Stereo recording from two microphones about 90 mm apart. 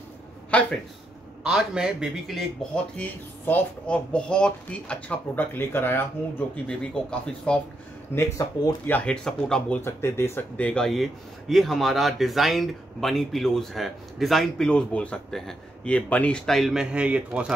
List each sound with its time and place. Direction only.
0.5 s a sound: 15° left (ahead or behind)
1.4 s a man's voice: 10° right (ahead or behind)
2.7 s speech: 20° left (ahead or behind)
8.1 s speech: 25° left (ahead or behind)
8.8 s speech: 15° left (ahead or behind)
9.8 s speech: 30° left (ahead or behind)
10.6 s speech: 10° left (ahead or behind)
10.9 s speech: centre (ahead or behind)
14.7 s speech: 15° left (ahead or behind)
16.9 s a man's voice: 15° right (ahead or behind)